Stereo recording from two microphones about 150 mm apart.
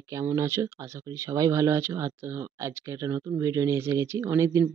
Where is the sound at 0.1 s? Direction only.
20° right (ahead or behind).